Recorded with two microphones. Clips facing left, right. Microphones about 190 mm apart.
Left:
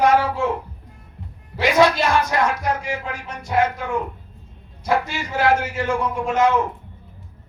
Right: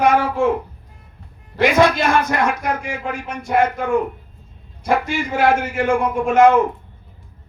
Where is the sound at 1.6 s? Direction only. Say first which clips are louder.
Right 2 dB; 55° right (ahead or behind).